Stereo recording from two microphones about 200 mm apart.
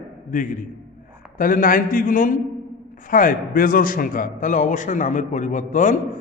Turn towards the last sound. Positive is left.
turn(degrees=40)  # may be behind; listen again after turning